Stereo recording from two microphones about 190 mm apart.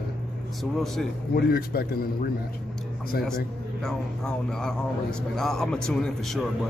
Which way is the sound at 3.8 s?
5° left (ahead or behind).